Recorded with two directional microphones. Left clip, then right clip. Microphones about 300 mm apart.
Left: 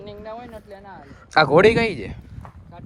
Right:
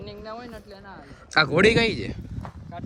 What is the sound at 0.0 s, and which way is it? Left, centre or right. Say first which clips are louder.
Speech: left 2 dB; left.